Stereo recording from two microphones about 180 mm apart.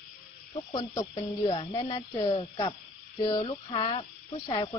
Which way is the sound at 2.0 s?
35° left (ahead or behind).